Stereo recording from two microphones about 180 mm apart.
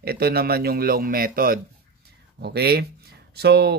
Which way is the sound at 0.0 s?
60° right (ahead or behind).